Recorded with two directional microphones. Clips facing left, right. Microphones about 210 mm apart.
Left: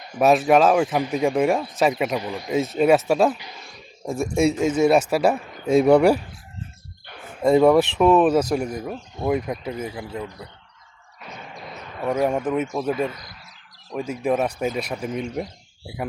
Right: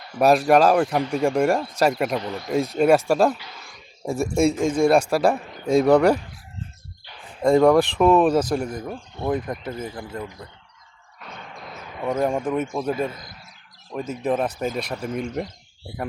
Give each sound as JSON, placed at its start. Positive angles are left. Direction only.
{"t": 0.2, "sound": "speech", "side_deg": 0}
{"t": 0.9, "sound": "a man's voice", "side_deg": 15}
{"t": 1.2, "sound": "speech", "side_deg": 5}
{"t": 3.3, "sound": "speech", "side_deg": 15}
{"t": 4.0, "sound": "a man's voice", "side_deg": -5}
{"t": 7.4, "sound": "a man's voice", "side_deg": 5}
{"t": 11.2, "sound": "a sound", "side_deg": 5}
{"t": 11.9, "sound": "a man's voice", "side_deg": 5}